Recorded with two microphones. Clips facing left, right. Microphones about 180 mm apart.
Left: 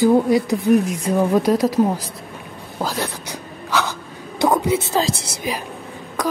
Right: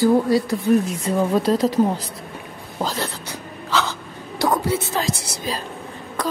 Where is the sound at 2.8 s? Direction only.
10° left (ahead or behind).